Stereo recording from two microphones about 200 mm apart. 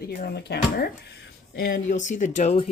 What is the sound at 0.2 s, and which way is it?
Speech, 55° left (ahead or behind).